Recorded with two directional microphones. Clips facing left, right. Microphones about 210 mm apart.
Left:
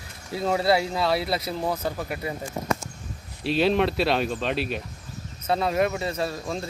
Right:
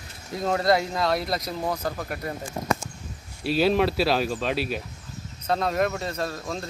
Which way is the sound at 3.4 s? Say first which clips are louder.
Even; centre (ahead or behind).